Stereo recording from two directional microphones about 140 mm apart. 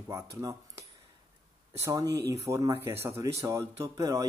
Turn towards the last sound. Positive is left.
turn(degrees=-25)  # may be behind; listen again after turning